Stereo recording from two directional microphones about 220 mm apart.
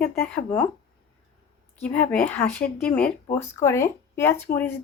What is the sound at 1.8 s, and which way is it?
Speech, 5° left (ahead or behind).